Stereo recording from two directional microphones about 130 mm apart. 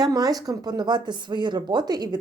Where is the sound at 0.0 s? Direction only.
30° right (ahead or behind).